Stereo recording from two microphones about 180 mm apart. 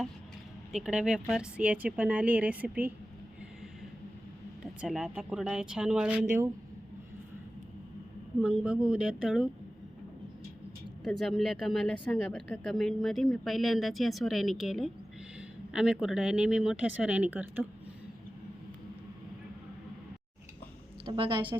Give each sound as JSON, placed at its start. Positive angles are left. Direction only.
{"t": 0.7, "sound": "a woman's voice", "side_deg": -5}
{"t": 4.6, "sound": "speech", "side_deg": -5}
{"t": 8.4, "sound": "speech", "side_deg": -5}
{"t": 11.0, "sound": "a woman's voice", "side_deg": 0}
{"t": 21.0, "sound": "a woman's voice", "side_deg": -30}